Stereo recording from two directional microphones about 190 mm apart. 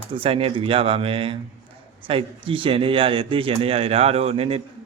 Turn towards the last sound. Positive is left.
turn(degrees=-30)  # may be behind; listen again after turning